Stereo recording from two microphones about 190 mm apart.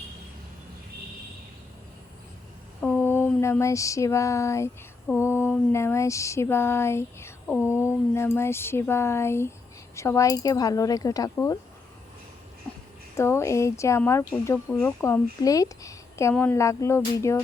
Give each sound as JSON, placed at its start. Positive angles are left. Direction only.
{"t": 2.8, "sound": "a sound", "side_deg": 10}
{"t": 5.0, "sound": "speech", "side_deg": 15}
{"t": 13.1, "sound": "speech", "side_deg": 15}